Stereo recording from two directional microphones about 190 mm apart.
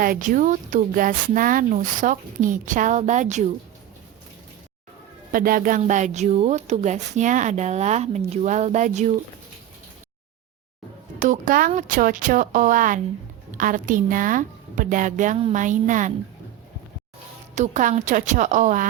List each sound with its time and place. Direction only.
0.0 s speech: 45° right (ahead or behind)
5.3 s speech: 45° right (ahead or behind)
11.2 s speech: 45° right (ahead or behind)
17.5 s speech: 40° right (ahead or behind)